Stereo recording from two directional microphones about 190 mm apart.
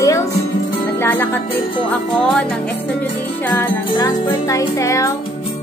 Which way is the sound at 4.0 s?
20° left (ahead or behind).